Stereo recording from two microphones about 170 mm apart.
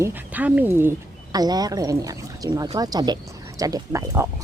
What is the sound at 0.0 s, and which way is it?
Speech, 10° right (ahead or behind).